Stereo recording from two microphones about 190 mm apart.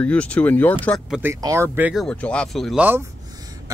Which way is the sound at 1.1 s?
10° right (ahead or behind).